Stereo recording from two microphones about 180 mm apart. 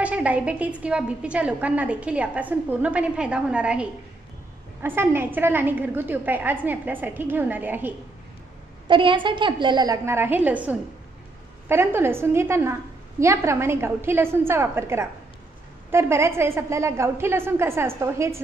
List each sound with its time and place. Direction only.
0.0 s a woman's voice: 5° right (ahead or behind)
8.8 s a woman's voice: 30° right (ahead or behind)